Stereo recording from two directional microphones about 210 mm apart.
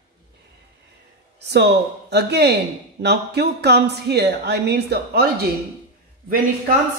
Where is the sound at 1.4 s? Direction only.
55° right (ahead or behind).